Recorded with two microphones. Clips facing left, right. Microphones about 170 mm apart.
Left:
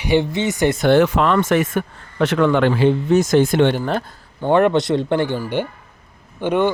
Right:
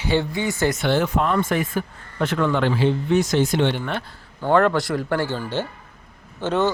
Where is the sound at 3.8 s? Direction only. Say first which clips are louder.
Left 6 dB; 35° left (ahead or behind).